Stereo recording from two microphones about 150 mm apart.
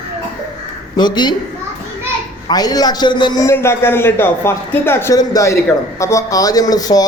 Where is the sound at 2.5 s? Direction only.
25° left (ahead or behind).